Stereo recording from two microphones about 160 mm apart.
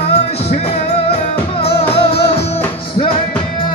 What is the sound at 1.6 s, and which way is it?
Music, 35° left (ahead or behind).